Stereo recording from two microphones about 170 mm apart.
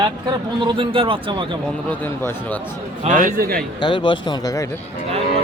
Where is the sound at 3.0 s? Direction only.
45° right (ahead or behind).